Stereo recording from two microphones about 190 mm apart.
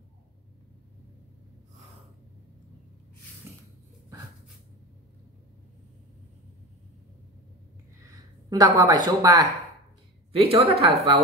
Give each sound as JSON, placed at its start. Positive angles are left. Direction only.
{"t": 8.0, "sound": "speech", "side_deg": -20}
{"t": 10.3, "sound": "speech", "side_deg": -30}